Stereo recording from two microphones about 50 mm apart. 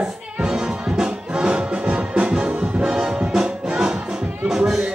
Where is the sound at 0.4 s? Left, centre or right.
Centre.